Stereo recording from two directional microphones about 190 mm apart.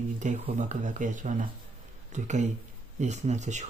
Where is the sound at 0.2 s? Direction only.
40° right (ahead or behind).